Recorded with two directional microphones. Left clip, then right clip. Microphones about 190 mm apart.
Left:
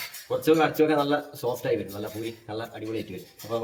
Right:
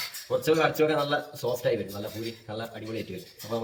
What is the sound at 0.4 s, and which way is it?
Speech, 20° left (ahead or behind).